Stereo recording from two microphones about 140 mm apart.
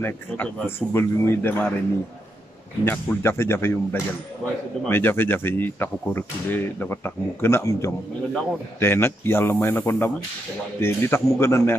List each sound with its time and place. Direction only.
0.0 s speech: 15° left (ahead or behind)
2.8 s a man's voice: 15° left (ahead or behind)